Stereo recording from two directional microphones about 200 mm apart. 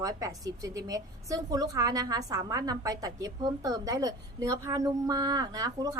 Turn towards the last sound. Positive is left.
turn(degrees=-20)  # may be behind; listen again after turning